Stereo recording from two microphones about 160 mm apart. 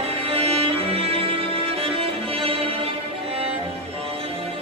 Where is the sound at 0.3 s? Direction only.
40° right (ahead or behind).